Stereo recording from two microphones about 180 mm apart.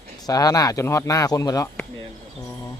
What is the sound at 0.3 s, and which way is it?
Speech, 20° left (ahead or behind).